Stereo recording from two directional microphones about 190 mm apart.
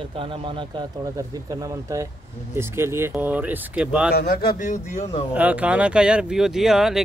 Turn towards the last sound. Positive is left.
turn(degrees=0)  # may be behind; listen again after turning